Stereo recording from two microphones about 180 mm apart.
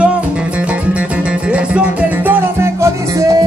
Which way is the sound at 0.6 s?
5° right (ahead or behind).